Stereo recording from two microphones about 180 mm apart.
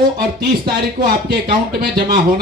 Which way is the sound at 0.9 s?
55° right (ahead or behind).